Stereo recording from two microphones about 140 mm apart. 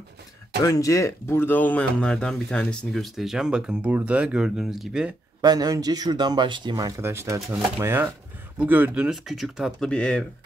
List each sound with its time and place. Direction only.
0.7 s speech: 25° left (ahead or behind); by 5.1 s 5° right (ahead or behind)
5.4 s speech: 30° right (ahead or behind)
7.0 s speech: 20° right (ahead or behind); by 10.2 s 5° left (ahead or behind)